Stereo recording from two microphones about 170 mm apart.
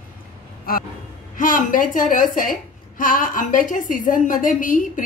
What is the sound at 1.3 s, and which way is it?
A woman's voice, 55° left (ahead or behind).